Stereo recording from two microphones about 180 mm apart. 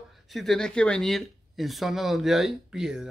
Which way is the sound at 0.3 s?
Centre (ahead or behind).